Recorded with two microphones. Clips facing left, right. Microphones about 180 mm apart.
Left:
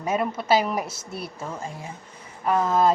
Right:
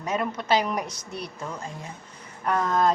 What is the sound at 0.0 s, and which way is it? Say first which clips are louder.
A woman's voice: left 3 dB; 10° left (ahead or behind).